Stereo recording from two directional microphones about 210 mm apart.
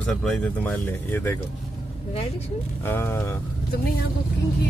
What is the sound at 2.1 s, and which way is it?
Speech, 30° left (ahead or behind).